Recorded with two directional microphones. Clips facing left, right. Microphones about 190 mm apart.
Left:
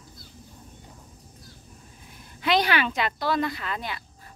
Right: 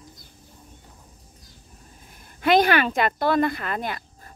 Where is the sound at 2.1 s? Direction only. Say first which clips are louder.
Right 5 dB; 50° right (ahead or behind).